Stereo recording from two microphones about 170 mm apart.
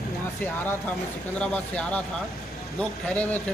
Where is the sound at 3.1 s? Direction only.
10° left (ahead or behind).